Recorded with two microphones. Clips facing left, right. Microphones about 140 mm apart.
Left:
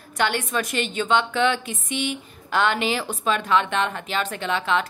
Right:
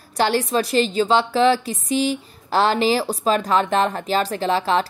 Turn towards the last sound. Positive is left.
turn(degrees=-35)  # may be behind; listen again after turning